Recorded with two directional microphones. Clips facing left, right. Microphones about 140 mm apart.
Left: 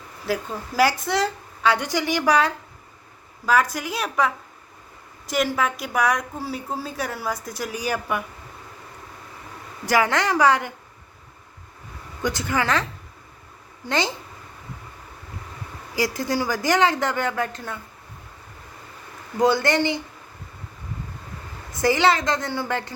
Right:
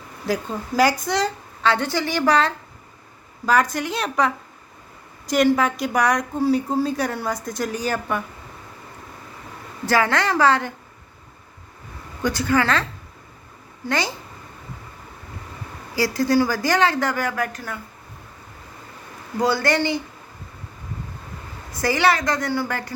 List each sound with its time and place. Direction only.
0.8 s a woman's voice: centre (ahead or behind)
5.3 s a woman's voice: centre (ahead or behind)
9.8 s a woman's voice: 15° left (ahead or behind)
12.2 s a woman's voice: 20° left (ahead or behind)
16.0 s speech: 20° left (ahead or behind)
19.4 s speech: 20° left (ahead or behind)
21.8 s speech: 20° left (ahead or behind)